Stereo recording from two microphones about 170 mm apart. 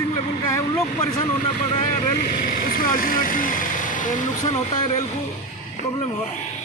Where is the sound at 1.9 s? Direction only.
60° left (ahead or behind).